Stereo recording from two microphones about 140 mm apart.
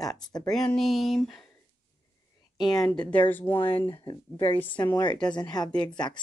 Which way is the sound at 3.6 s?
35° left (ahead or behind).